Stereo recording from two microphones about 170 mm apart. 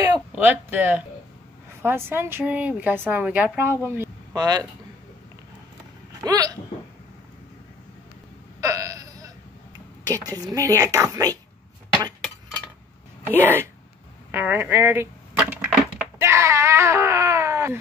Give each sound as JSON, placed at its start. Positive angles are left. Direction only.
{"t": 0.3, "sound": "speech", "side_deg": -10}
{"t": 6.2, "sound": "a woman's voice", "side_deg": -20}
{"t": 8.5, "sound": "hiccup", "side_deg": -20}
{"t": 10.0, "sound": "a woman's voice", "side_deg": -20}
{"t": 13.3, "sound": "speech", "side_deg": -10}